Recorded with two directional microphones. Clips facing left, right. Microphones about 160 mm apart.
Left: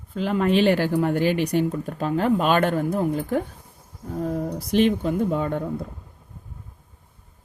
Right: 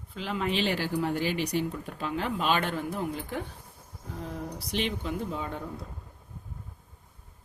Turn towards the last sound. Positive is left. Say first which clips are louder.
# left 10 dB
turn(degrees=55)  # may be behind; listen again after turning